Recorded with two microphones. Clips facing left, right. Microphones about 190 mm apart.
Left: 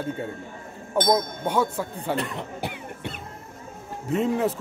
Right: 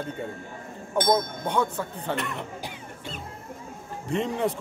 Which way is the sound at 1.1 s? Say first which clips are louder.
Left 1 dB; 5° left (ahead or behind).